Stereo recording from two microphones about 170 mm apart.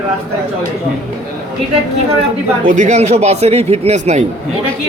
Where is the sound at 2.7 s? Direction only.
45° right (ahead or behind).